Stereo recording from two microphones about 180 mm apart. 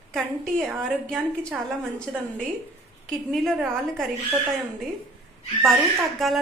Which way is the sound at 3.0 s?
Centre (ahead or behind).